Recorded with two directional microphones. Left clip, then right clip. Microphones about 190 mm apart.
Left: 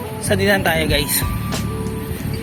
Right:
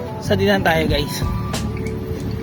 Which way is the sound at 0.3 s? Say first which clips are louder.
Even; 15° right (ahead or behind).